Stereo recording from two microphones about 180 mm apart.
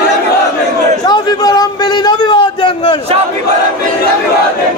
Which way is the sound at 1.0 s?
20° left (ahead or behind).